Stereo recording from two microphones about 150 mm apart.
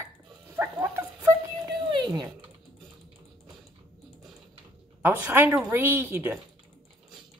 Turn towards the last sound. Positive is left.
turn(degrees=-15)  # may be behind; listen again after turning